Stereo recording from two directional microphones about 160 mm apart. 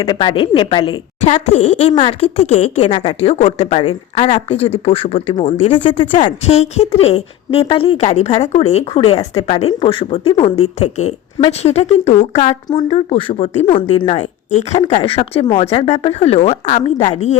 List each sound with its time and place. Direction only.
0.0 s speech: 30° left (ahead or behind)
1.2 s speech: 45° left (ahead or behind)
5.3 s speech: 30° left (ahead or behind)
6.2 s speech: 40° left (ahead or behind)
12.6 s speech: 30° left (ahead or behind); by 17.3 s 45° left (ahead or behind)